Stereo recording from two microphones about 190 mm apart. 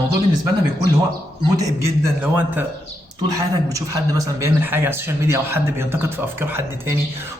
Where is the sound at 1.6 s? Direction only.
15° right (ahead or behind).